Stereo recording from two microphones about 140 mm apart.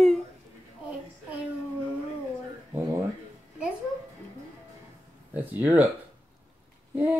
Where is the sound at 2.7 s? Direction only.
20° right (ahead or behind).